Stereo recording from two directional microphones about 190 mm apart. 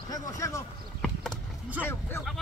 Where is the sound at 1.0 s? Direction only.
5° left (ahead or behind).